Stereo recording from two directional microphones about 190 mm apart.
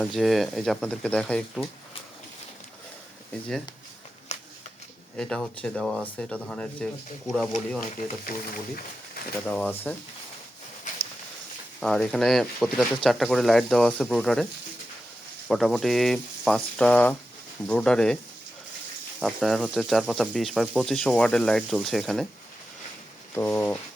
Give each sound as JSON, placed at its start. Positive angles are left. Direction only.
{"t": 0.0, "sound": "speech", "side_deg": 0}
{"t": 5.1, "sound": "speech", "side_deg": 5}
{"t": 7.8, "sound": "speech", "side_deg": 50}
{"t": 9.5, "sound": "speech", "side_deg": 10}
{"t": 11.8, "sound": "speech", "side_deg": 5}
{"t": 15.4, "sound": "speech", "side_deg": 0}
{"t": 19.2, "sound": "speech", "side_deg": 0}
{"t": 23.3, "sound": "speech", "side_deg": 10}